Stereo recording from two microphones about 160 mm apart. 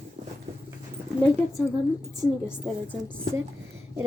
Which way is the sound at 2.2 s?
10° right (ahead or behind).